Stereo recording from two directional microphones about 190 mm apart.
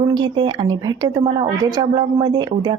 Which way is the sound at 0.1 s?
25° right (ahead or behind).